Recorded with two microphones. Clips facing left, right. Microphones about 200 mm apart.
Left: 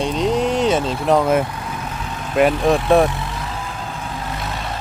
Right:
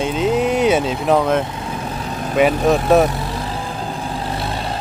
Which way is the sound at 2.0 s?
40° right (ahead or behind).